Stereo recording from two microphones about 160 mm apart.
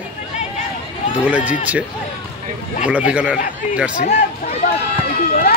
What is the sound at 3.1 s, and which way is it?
Speech, 5° right (ahead or behind).